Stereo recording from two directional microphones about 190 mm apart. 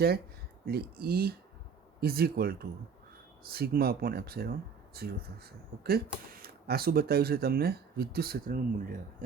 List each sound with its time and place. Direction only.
0.6 s speech: 55° right (ahead or behind)